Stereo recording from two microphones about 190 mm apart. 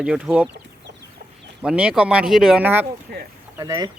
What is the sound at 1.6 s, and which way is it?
Speech, 5° right (ahead or behind).